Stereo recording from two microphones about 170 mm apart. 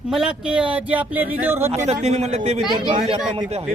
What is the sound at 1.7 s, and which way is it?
Speech, 40° right (ahead or behind).